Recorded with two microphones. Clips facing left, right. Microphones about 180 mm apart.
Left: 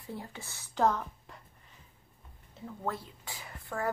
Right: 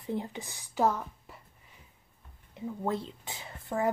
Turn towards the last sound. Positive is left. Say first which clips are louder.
# right 5 dB
turn(degrees=-20)  # may be behind; listen again after turning